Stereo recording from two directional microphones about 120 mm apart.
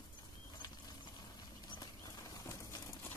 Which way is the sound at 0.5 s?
35° left (ahead or behind).